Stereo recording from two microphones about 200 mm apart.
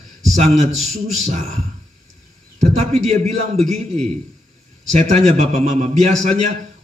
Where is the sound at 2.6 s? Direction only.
35° right (ahead or behind).